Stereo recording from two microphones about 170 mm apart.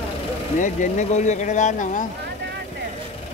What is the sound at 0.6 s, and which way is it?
Speech, 50° left (ahead or behind).